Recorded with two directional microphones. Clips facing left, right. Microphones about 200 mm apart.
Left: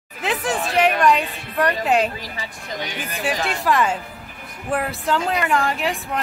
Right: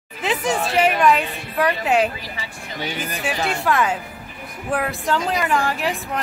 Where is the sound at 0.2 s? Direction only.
Centre (ahead or behind).